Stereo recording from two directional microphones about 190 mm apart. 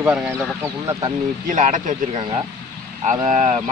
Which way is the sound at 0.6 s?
15° right (ahead or behind).